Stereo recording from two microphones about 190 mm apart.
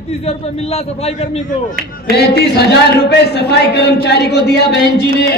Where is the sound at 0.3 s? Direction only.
35° left (ahead or behind).